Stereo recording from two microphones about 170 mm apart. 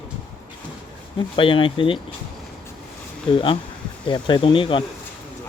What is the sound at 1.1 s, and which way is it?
Speech, 30° left (ahead or behind).